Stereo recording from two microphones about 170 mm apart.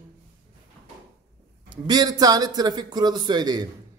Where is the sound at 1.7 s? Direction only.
25° right (ahead or behind).